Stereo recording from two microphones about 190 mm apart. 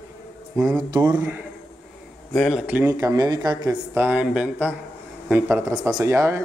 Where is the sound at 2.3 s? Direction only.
Centre (ahead or behind); by 3.8 s 20° right (ahead or behind).